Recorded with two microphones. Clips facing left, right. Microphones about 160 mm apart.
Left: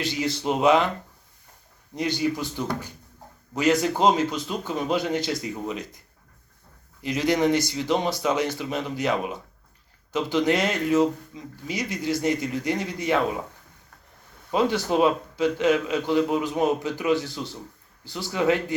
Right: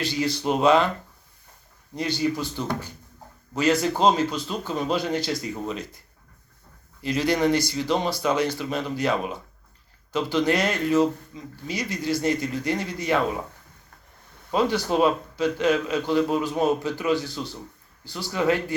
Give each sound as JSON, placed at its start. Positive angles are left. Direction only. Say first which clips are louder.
{"t": 0.0, "sound": "speech", "louder": "right 1 dB", "side_deg": 20}
{"t": 2.0, "sound": "speech", "louder": "even", "side_deg": 20}
{"t": 7.0, "sound": "speech", "louder": "even", "side_deg": 20}
{"t": 14.5, "sound": "speech", "louder": "even", "side_deg": 20}